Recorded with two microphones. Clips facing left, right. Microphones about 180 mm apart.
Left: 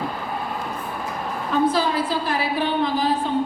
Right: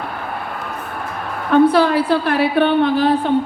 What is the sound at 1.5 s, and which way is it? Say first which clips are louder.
A woman's voice: right 8 dB; 65° right (ahead or behind).